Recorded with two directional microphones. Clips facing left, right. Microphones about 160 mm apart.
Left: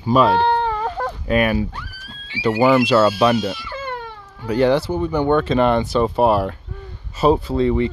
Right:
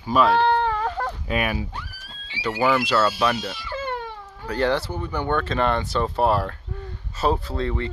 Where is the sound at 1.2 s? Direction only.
50° left (ahead or behind).